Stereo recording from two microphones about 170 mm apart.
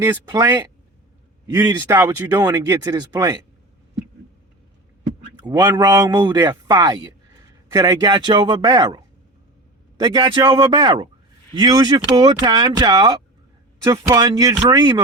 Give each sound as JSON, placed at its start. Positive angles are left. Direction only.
{"t": 0.0, "sound": "speech", "side_deg": -20}
{"t": 5.4, "sound": "speech", "side_deg": -20}